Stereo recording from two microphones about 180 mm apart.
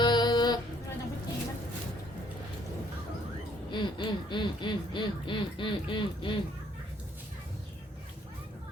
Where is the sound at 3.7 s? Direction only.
25° left (ahead or behind).